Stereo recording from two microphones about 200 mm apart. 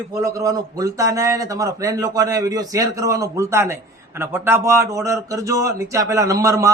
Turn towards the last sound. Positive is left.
turn(degrees=-15)  # may be behind; listen again after turning